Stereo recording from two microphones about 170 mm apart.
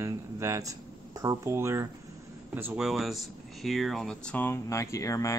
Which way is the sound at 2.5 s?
10° right (ahead or behind).